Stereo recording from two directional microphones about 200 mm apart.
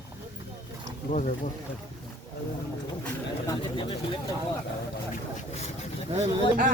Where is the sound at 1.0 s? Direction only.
40° left (ahead or behind).